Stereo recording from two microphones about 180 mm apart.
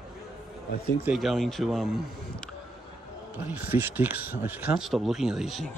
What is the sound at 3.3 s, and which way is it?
Speech, 10° right (ahead or behind).